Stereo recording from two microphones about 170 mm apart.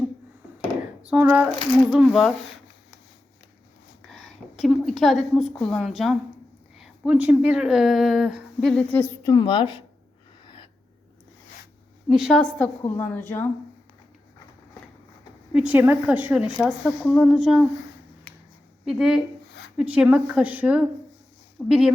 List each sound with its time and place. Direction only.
1.0 s speech: 10° right (ahead or behind)
4.1 s a woman's voice: centre (ahead or behind)
9.2 s a woman's voice: 25° left (ahead or behind)
12.0 s a woman's voice: centre (ahead or behind)
15.5 s speech: 10° right (ahead or behind)
18.9 s speech: centre (ahead or behind)